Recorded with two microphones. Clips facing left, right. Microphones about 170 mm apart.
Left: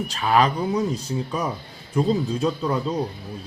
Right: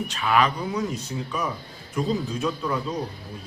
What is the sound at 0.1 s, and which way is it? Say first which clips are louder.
Speech: left 3 dB; 35° left (ahead or behind).